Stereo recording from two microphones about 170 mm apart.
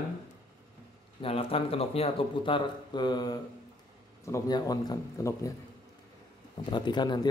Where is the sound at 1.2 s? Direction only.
35° left (ahead or behind); by 5.5 s 20° left (ahead or behind).